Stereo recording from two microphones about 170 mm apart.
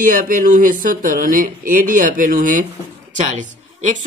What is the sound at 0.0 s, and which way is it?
A woman's voice, 50° right (ahead or behind).